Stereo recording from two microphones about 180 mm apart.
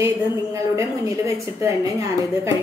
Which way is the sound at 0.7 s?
15° right (ahead or behind).